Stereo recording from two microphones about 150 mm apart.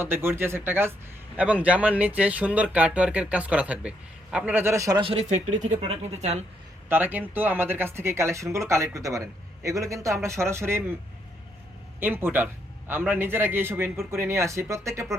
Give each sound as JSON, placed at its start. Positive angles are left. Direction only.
{"t": 0.0, "sound": "speech", "side_deg": -15}
{"t": 4.9, "sound": "speech", "side_deg": -35}
{"t": 5.3, "sound": "speech", "side_deg": -50}
{"t": 6.8, "sound": "speech", "side_deg": -15}
{"t": 11.9, "sound": "speech", "side_deg": -15}